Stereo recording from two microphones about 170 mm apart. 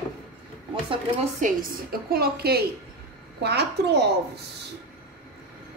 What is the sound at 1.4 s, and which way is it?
A woman's voice, 55° right (ahead or behind).